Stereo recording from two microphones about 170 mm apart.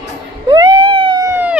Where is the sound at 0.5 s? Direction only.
25° right (ahead or behind).